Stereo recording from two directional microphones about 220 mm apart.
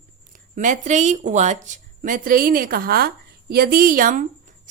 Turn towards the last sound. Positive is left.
turn(degrees=-40)  # may be behind; listen again after turning